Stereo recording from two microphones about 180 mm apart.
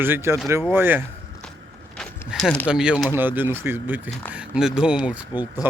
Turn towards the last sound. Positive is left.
turn(degrees=-10)  # may be behind; listen again after turning